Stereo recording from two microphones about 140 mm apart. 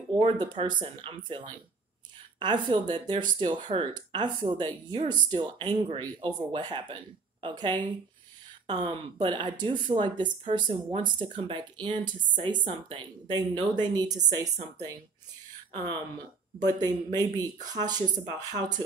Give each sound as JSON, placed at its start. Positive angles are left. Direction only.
{"t": 0.2, "sound": "speech", "side_deg": -35}
{"t": 16.6, "sound": "speech", "side_deg": -30}